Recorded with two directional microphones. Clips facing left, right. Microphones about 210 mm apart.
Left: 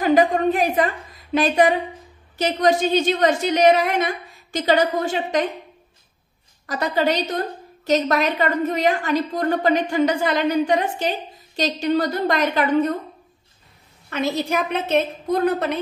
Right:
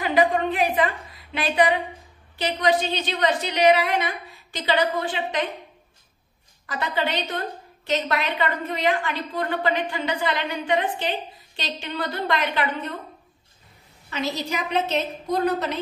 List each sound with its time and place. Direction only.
0.0 s a sound: 45° left (ahead or behind)
2.3 s a woman's voice: 45° left (ahead or behind)
6.6 s a woman's voice: 40° left (ahead or behind)
14.1 s a woman's voice: 55° left (ahead or behind)